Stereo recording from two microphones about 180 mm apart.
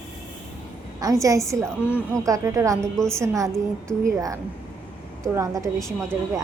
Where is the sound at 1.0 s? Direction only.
20° right (ahead or behind).